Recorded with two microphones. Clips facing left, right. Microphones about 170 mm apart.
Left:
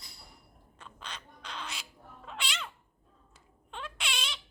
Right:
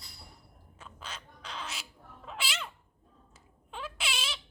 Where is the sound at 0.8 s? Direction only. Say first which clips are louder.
Right 1 dB; 5° right (ahead or behind).